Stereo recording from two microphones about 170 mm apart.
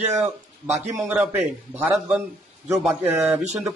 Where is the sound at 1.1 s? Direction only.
5° right (ahead or behind).